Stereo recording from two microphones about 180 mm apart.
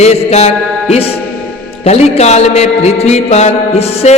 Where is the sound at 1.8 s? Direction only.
35° left (ahead or behind).